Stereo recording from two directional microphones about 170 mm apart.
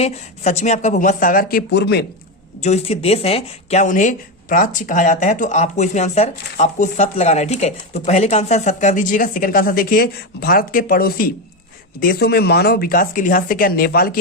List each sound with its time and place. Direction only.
0.0 s speech: 40° left (ahead or behind); by 2.0 s 80° left
2.6 s speech: 40° left (ahead or behind); by 14.2 s 60° left (ahead or behind)